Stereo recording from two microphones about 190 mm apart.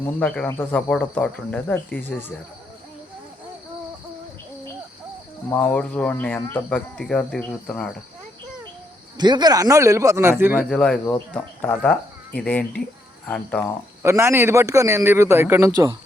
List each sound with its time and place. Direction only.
0.2 s speech: 10° left (ahead or behind)
5.5 s speech: 10° left (ahead or behind)
9.1 s a man's voice: 20° right (ahead or behind)
10.7 s speech: 5° left (ahead or behind)
14.0 s a man's voice: 15° right (ahead or behind)